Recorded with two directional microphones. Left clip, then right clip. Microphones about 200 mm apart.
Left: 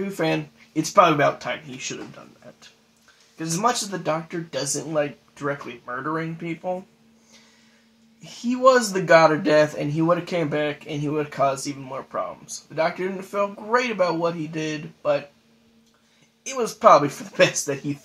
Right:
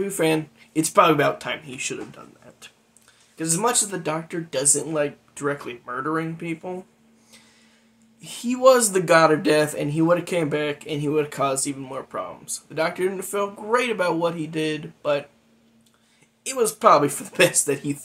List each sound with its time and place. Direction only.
0.0 s speech: 5° right (ahead or behind)
3.3 s speech: 5° right (ahead or behind)
8.5 s speech: 10° right (ahead or behind)
16.4 s speech: 5° right (ahead or behind)